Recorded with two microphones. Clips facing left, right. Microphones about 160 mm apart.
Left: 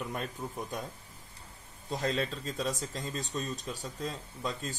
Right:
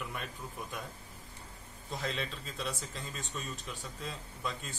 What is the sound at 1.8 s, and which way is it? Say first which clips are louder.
Speech: left 6 dB; 35° left (ahead or behind).